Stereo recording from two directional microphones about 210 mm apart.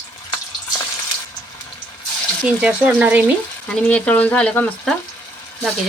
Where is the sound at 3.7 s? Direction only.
5° left (ahead or behind).